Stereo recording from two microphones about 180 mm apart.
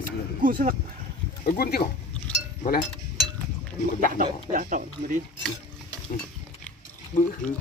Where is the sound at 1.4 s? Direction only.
55° left (ahead or behind).